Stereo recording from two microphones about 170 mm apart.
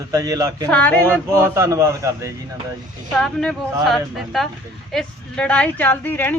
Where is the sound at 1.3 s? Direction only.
15° right (ahead or behind).